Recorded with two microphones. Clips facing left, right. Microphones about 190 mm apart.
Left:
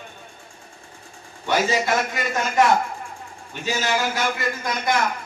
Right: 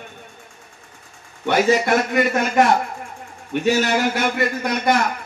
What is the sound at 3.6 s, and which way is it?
A man's voice, 60° right (ahead or behind).